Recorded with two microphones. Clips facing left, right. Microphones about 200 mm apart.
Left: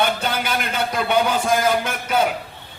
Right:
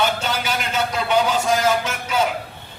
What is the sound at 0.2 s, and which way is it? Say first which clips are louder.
A man's voice: left 1 dB; 55° left (ahead or behind).